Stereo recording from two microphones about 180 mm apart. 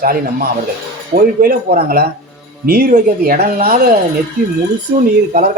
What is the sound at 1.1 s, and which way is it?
Speech, 55° right (ahead or behind).